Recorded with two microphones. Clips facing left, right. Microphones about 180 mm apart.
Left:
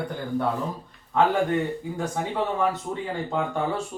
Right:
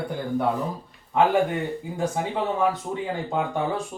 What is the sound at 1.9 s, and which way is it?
Speech, 15° right (ahead or behind).